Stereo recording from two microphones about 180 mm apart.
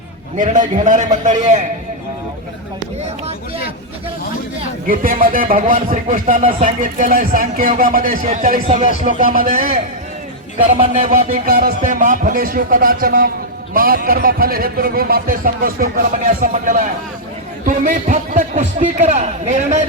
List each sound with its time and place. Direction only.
0.3 s speech: 45° right (ahead or behind)
4.9 s speech: 50° right (ahead or behind)
8.6 s speech: 30° right (ahead or behind)
9.0 s speech: 50° right (ahead or behind)
10.6 s speech: 35° right (ahead or behind)